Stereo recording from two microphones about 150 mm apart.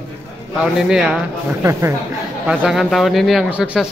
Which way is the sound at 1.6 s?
20° right (ahead or behind).